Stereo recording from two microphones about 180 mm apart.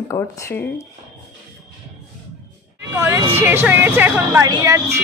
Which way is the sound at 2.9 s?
15° right (ahead or behind).